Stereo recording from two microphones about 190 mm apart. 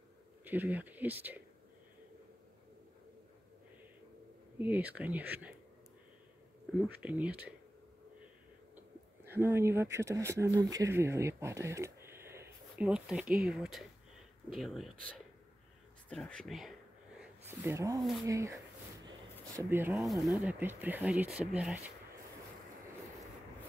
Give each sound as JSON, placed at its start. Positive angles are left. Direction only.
{"t": 0.5, "sound": "speech", "side_deg": -10}
{"t": 4.6, "sound": "speech", "side_deg": -10}
{"t": 7.0, "sound": "speech", "side_deg": -10}
{"t": 8.7, "sound": "speech", "side_deg": -10}
{"t": 17.2, "sound": "a sound", "side_deg": -10}
{"t": 18.2, "sound": "speech", "side_deg": -15}
{"t": 19.6, "sound": "speech", "side_deg": -10}